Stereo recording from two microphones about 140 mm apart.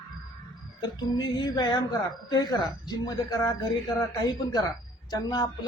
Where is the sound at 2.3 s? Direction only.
30° left (ahead or behind).